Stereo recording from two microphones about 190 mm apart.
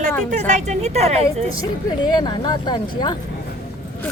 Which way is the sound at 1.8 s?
20° left (ahead or behind).